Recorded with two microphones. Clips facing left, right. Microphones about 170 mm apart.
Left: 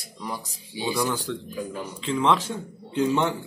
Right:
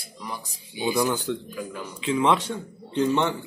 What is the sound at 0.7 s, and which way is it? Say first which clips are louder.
A man's voice: right 2 dB; 10° right (ahead or behind).